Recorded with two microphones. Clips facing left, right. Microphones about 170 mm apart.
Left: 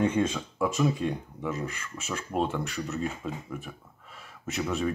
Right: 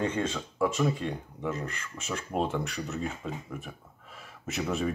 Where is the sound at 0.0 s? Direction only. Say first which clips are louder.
Left 4 dB; 10° left (ahead or behind).